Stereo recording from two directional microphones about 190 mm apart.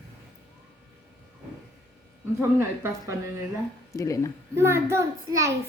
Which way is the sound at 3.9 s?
15° left (ahead or behind).